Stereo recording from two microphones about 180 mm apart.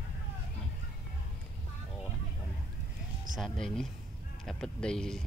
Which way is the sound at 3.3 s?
Centre (ahead or behind).